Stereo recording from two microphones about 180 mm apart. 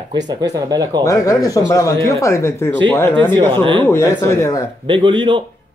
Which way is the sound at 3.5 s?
25° right (ahead or behind).